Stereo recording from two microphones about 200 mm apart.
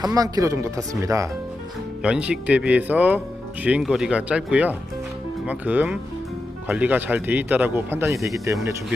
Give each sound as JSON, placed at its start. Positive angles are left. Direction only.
{"t": 0.0, "sound": "speech", "side_deg": -20}
{"t": 2.0, "sound": "speech", "side_deg": -5}